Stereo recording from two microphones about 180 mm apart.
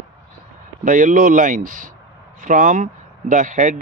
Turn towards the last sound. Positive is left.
turn(degrees=-45)  # may be behind; listen again after turning